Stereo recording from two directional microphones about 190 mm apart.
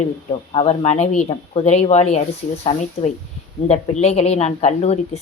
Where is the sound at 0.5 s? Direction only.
35° left (ahead or behind).